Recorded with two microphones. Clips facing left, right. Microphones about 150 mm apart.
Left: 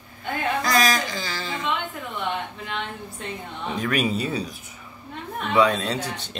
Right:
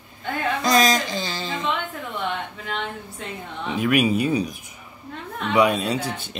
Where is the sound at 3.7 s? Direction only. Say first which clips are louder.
Right 4 dB; 10° right (ahead or behind).